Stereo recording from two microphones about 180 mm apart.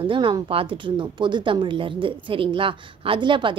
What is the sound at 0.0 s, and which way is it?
A woman's voice, 30° right (ahead or behind).